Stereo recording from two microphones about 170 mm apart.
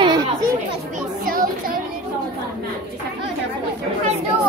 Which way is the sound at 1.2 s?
55° right (ahead or behind).